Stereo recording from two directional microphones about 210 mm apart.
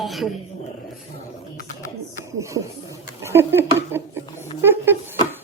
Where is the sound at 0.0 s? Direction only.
Centre (ahead or behind).